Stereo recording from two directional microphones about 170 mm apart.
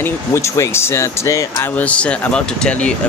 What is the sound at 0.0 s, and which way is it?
Speech, 15° left (ahead or behind).